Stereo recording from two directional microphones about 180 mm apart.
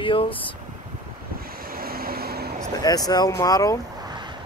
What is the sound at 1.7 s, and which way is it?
Vehicle, 55° right (ahead or behind).